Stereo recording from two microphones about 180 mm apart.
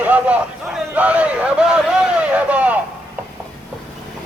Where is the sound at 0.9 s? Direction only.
5° right (ahead or behind).